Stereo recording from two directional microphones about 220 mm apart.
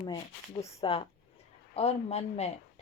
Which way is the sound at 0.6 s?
20° left (ahead or behind).